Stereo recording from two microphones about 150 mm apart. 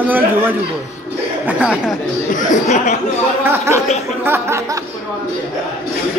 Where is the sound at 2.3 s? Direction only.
50° left (ahead or behind).